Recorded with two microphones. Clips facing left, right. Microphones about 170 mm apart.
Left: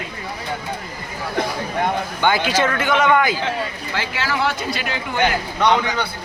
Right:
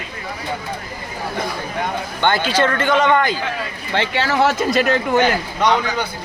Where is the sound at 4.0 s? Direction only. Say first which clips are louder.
Right 6 dB; 35° right (ahead or behind).